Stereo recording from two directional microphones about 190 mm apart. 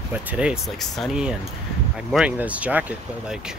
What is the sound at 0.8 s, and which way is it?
Speech, centre (ahead or behind).